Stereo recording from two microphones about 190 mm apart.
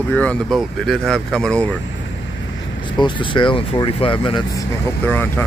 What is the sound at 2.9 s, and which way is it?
Speech, 25° left (ahead or behind).